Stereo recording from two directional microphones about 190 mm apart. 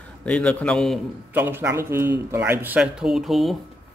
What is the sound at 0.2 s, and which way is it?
Speech, 5° left (ahead or behind).